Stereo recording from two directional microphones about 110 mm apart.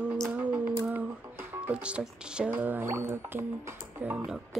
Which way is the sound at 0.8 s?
15° right (ahead or behind).